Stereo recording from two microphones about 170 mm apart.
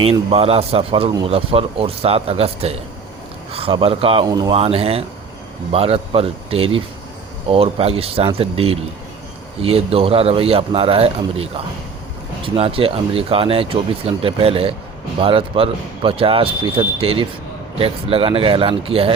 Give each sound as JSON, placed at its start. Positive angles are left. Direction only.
{"t": 0.0, "sound": "speech", "side_deg": -35}
{"t": 4.3, "sound": "speech", "side_deg": -25}
{"t": 4.5, "sound": "speech", "side_deg": -35}